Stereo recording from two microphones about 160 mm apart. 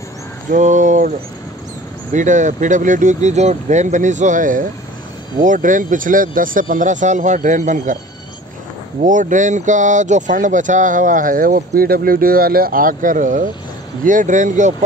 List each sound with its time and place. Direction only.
0.5 s speech: 50° right (ahead or behind)
2.1 s speech: 50° right (ahead or behind)
9.0 s speech: 55° right (ahead or behind)